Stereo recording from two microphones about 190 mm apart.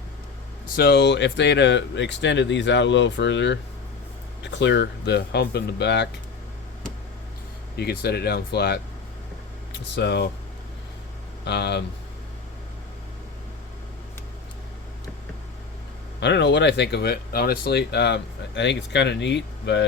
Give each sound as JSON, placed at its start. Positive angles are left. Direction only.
{"t": 0.8, "sound": "speech", "side_deg": 60}
{"t": 4.6, "sound": "speech", "side_deg": 65}
{"t": 7.8, "sound": "speech", "side_deg": 55}
{"t": 11.4, "sound": "speech", "side_deg": 60}
{"t": 16.2, "sound": "speech", "side_deg": 65}